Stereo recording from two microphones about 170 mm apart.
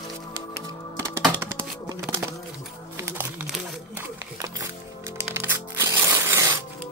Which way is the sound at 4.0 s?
20° right (ahead or behind).